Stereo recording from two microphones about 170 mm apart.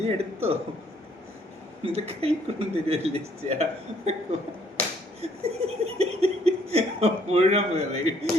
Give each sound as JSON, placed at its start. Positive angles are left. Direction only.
{"t": 0.0, "sound": "laughter", "side_deg": -40}
{"t": 1.8, "sound": "laughter", "side_deg": -35}